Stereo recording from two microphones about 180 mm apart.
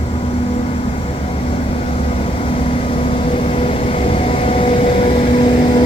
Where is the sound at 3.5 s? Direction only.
30° left (ahead or behind).